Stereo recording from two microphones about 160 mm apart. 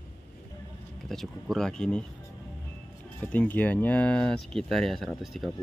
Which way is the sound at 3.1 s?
10° left (ahead or behind).